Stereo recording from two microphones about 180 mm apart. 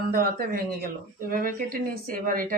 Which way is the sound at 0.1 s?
55° right (ahead or behind).